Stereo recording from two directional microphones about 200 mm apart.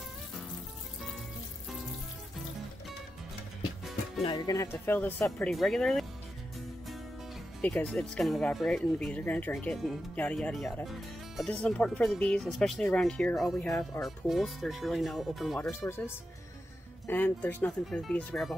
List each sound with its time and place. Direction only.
4.2 s speech: 20° left (ahead or behind); by 6.0 s centre (ahead or behind)
7.6 s speech: 5° left (ahead or behind)
15.7 s speech: 15° left (ahead or behind)
17.0 s speech: 10° left (ahead or behind)